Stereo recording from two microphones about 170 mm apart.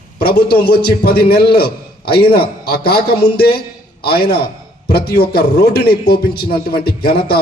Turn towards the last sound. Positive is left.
turn(degrees=65)  # may be behind; listen again after turning